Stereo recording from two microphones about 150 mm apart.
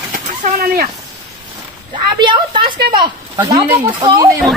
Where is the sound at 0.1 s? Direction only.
70° right (ahead or behind).